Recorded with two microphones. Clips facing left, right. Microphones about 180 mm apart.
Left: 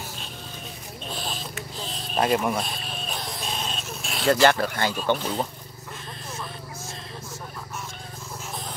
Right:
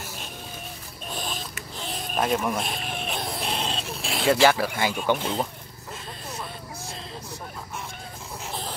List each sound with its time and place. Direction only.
2.1 s speech: 5° left (ahead or behind)
2.6 s a sound: 20° right (ahead or behind)
4.3 s speech: 5° right (ahead or behind)